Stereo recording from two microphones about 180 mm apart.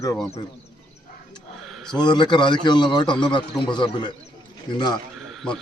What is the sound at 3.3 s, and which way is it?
A man's voice, 25° left (ahead or behind).